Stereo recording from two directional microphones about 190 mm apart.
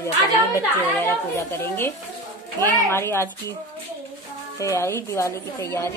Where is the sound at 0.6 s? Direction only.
15° left (ahead or behind).